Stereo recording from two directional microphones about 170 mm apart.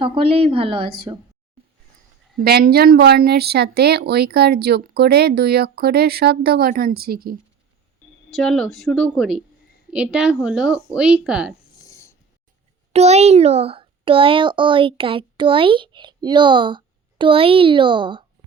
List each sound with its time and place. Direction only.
0.0 s a woman's voice: 35° right (ahead or behind)
2.3 s speech: 65° right (ahead or behind)
8.3 s a woman's voice: 5° left (ahead or behind)
11.7 s a sound: 20° left (ahead or behind)
12.9 s a child's voice: 40° right (ahead or behind)